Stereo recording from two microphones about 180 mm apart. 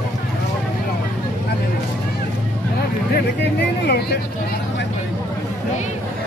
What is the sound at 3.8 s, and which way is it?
Speech, 65° left (ahead or behind).